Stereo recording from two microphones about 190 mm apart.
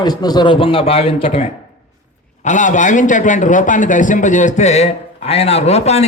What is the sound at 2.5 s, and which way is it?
A man's voice, 40° left (ahead or behind).